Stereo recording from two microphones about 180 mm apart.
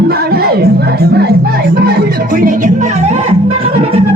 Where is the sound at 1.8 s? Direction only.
60° right (ahead or behind).